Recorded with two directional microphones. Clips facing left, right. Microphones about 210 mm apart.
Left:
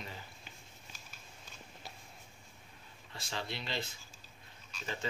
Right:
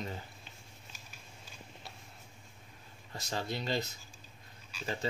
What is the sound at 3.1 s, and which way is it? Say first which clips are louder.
Speech: right 4 dB; 45° right (ahead or behind).